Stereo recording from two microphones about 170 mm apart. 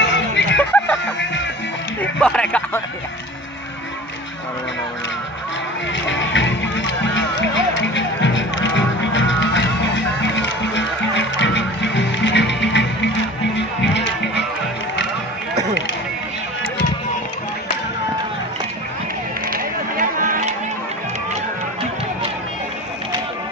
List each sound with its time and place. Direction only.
0.0 s music: 90° left
2.0 s a sound: 5° left (ahead or behind)
6.0 s music: 90° left
19.5 s run: 55° right (ahead or behind)